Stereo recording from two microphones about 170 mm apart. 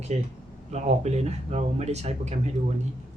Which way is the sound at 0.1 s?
40° right (ahead or behind).